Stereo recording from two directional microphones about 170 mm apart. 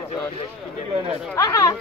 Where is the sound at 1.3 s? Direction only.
20° left (ahead or behind).